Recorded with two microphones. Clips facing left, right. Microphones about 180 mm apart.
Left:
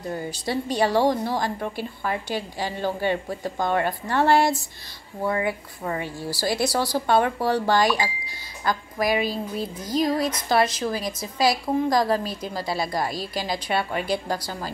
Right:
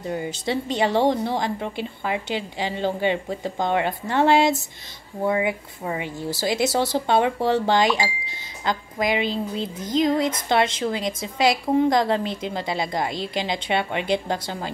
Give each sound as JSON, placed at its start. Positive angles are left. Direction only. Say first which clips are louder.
{"t": 0.1, "sound": "a woman's voice", "louder": "right 2 dB", "side_deg": -20}